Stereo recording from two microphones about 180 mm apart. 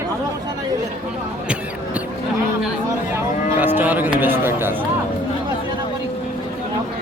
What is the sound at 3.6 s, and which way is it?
Cattle, 10° right (ahead or behind).